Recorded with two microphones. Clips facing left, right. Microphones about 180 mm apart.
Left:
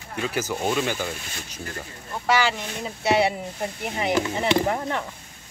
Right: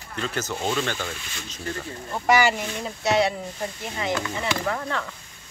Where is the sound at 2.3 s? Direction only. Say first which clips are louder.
Right 2 dB; 10° right (ahead or behind).